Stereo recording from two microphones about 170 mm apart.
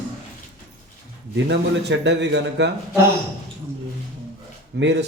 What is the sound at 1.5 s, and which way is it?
Speech, 90° right.